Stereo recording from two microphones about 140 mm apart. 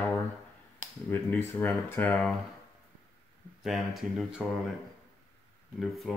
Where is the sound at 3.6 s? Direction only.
Centre (ahead or behind).